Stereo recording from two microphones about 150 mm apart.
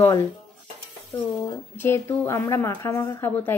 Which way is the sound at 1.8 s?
15° left (ahead or behind).